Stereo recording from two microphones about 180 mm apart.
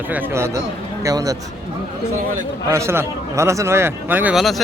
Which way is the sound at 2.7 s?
15° right (ahead or behind).